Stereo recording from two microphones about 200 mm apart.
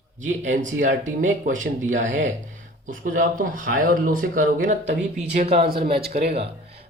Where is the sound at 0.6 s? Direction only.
40° right (ahead or behind).